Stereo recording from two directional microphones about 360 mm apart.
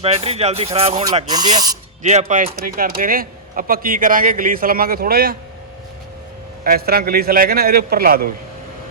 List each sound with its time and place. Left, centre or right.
0.0 s speech: centre
6.7 s speech: right